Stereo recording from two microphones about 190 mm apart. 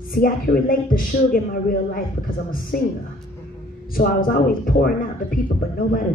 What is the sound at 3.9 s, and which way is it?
A man's voice, 50° left (ahead or behind).